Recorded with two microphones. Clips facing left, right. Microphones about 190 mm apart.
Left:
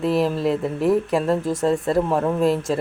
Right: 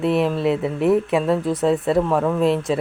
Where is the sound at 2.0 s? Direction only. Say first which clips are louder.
Right 1 dB; 15° left (ahead or behind).